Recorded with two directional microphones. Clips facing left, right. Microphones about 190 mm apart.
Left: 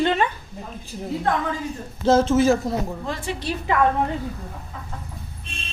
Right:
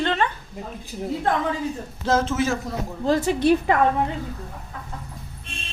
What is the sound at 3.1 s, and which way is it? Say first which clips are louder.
Speech: right 8 dB; 40° right (ahead or behind).